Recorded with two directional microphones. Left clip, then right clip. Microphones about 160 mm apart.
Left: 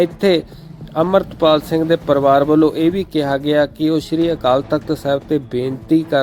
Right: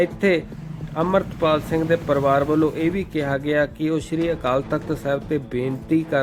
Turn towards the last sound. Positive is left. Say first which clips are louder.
# left 5 dB
turn(degrees=35)  # may be behind; listen again after turning